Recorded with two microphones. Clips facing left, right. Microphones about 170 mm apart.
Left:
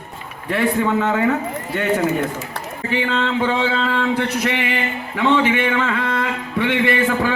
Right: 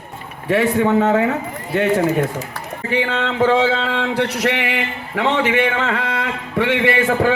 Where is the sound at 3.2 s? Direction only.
60° right (ahead or behind).